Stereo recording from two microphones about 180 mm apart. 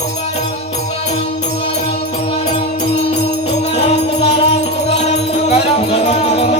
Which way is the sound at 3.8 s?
35° left (ahead or behind).